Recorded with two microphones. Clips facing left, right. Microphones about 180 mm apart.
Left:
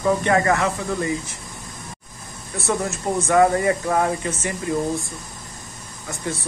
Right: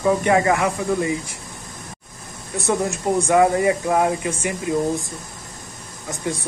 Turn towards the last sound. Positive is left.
turn(degrees=-15)  # may be behind; listen again after turning